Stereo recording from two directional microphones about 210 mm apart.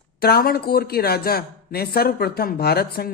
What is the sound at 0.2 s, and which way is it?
Speech, 45° left (ahead or behind).